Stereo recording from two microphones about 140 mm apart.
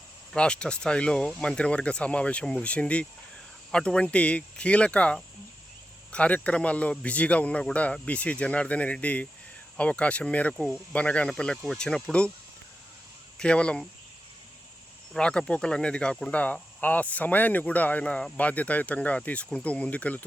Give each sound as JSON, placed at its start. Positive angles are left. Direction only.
{"t": 0.3, "sound": "speech", "side_deg": 5}
{"t": 13.4, "sound": "speech", "side_deg": 5}
{"t": 15.1, "sound": "speech", "side_deg": 5}